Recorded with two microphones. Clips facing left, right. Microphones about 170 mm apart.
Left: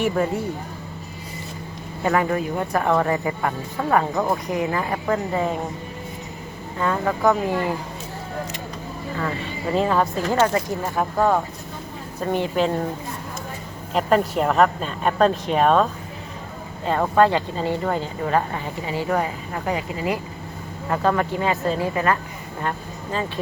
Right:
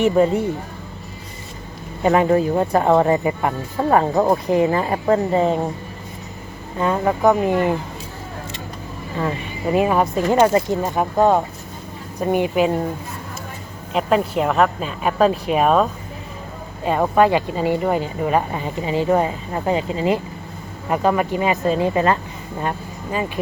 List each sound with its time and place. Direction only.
0.0 s speech: 20° right (ahead or behind)
2.0 s speech: 25° right (ahead or behind)
3.8 s speech: 30° right (ahead or behind)
6.7 s speech: 20° right (ahead or behind)
9.1 s speech: 20° right (ahead or behind)
13.9 s a woman's voice: centre (ahead or behind); by 22.2 s 25° right (ahead or behind)